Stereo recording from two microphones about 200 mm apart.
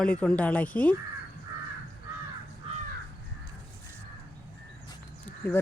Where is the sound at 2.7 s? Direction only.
30° right (ahead or behind).